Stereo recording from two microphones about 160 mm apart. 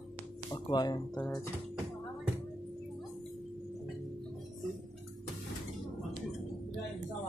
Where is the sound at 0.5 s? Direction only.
25° left (ahead or behind).